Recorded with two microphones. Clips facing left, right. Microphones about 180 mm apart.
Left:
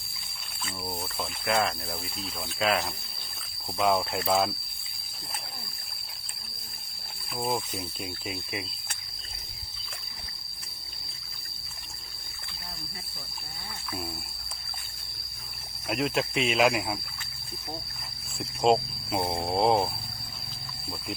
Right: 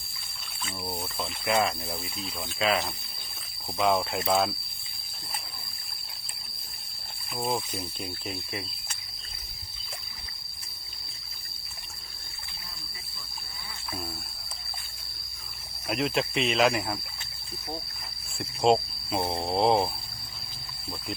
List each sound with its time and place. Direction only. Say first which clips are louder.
0.6 s speech: right 1 dB; centre (ahead or behind)
7.3 s speech: even; centre (ahead or behind)
15.9 s speech: even; centre (ahead or behind)
18.3 s speech: even; centre (ahead or behind)